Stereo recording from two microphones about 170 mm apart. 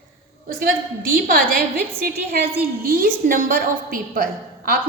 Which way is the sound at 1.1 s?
60° right (ahead or behind).